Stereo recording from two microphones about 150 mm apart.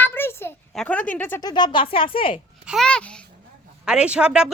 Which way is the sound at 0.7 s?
5° left (ahead or behind).